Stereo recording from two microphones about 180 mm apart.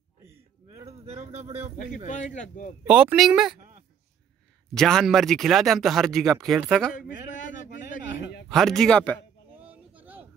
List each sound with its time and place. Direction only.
0.8 s speech: 35° right (ahead or behind)
2.0 s speech: 45° left (ahead or behind)
2.9 s speech: 5° right (ahead or behind)
4.7 s speech: 5° left (ahead or behind)
8.5 s speech: centre (ahead or behind)
9.6 s a sound: 10° right (ahead or behind)